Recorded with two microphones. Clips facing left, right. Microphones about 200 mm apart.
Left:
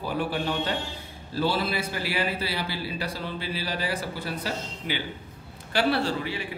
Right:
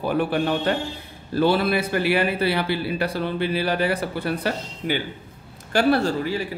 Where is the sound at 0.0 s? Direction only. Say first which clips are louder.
Right 6 dB; 60° right (ahead or behind).